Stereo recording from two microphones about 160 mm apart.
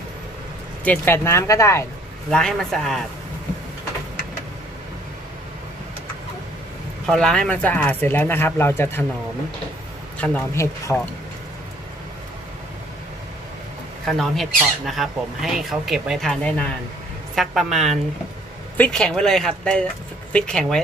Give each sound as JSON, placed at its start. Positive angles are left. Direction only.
{"t": 0.8, "sound": "speech", "side_deg": 15}
{"t": 2.3, "sound": "speech", "side_deg": 5}
{"t": 7.1, "sound": "speech", "side_deg": 5}
{"t": 10.1, "sound": "speech", "side_deg": 10}
{"t": 14.0, "sound": "speech", "side_deg": 0}